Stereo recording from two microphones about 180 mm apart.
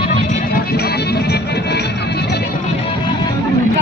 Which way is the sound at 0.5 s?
60° left (ahead or behind).